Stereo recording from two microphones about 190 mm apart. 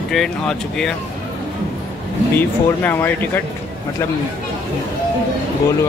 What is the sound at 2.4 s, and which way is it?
Speech, 10° left (ahead or behind).